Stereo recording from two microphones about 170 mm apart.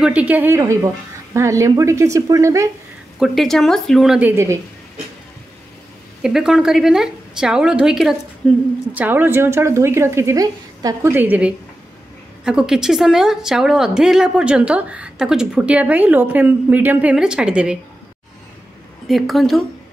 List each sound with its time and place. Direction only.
0.0 s speech: 5° right (ahead or behind)
3.2 s a woman's voice: centre (ahead or behind); by 4.6 s 15° right (ahead or behind)
6.2 s a woman's voice: 5° right (ahead or behind)
19.0 s a woman's voice: centre (ahead or behind)